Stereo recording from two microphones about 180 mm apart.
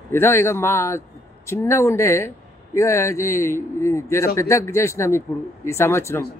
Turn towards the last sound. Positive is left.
turn(degrees=15)  # may be behind; listen again after turning